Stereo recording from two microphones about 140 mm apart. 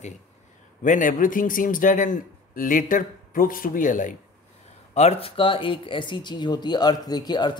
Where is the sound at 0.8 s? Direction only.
70° left (ahead or behind).